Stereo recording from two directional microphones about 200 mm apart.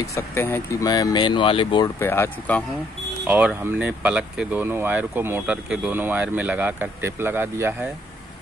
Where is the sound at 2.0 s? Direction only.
10° left (ahead or behind).